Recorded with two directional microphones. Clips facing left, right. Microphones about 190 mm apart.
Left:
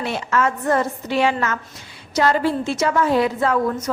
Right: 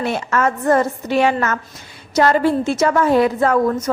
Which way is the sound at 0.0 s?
50° right (ahead or behind).